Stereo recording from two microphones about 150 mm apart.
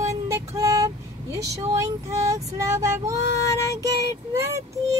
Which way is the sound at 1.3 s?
20° right (ahead or behind).